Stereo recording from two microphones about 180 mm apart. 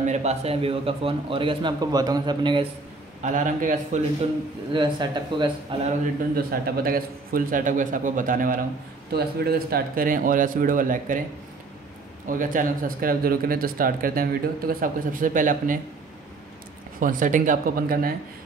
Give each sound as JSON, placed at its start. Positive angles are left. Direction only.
{"t": 0.0, "sound": "a man's voice", "side_deg": -40}
{"t": 3.2, "sound": "speech", "side_deg": -45}
{"t": 4.7, "sound": "a man's voice", "side_deg": -25}
{"t": 6.3, "sound": "speech", "side_deg": -55}
{"t": 9.1, "sound": "speech", "side_deg": -60}
{"t": 12.3, "sound": "speech", "side_deg": -50}
{"t": 17.0, "sound": "speech", "side_deg": -45}